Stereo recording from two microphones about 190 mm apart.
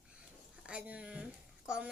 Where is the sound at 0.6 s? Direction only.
5° right (ahead or behind).